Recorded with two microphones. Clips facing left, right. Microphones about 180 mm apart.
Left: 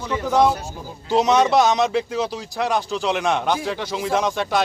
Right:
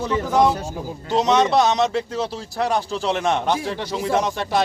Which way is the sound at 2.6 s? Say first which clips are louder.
Even; 30° right (ahead or behind).